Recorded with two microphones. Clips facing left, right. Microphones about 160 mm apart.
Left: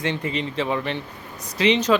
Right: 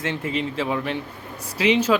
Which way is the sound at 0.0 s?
5° right (ahead or behind).